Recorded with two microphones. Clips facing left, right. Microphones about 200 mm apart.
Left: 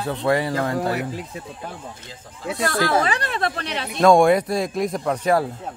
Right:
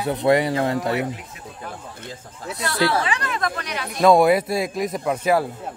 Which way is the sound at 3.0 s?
35° left (ahead or behind).